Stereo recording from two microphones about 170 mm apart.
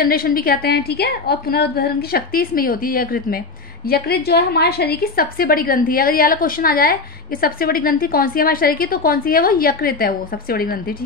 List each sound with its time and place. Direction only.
0.0 s a woman's voice: 60° left (ahead or behind)